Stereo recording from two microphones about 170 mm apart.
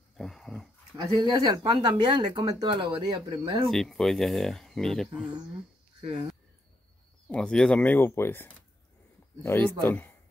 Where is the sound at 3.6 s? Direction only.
Centre (ahead or behind).